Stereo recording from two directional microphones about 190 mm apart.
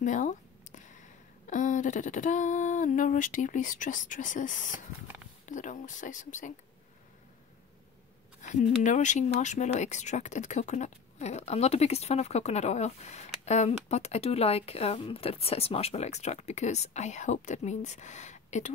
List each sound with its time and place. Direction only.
0.0 s a sound: 40° left (ahead or behind)
1.5 s speech: 40° left (ahead or behind)
8.4 s speech: 40° left (ahead or behind)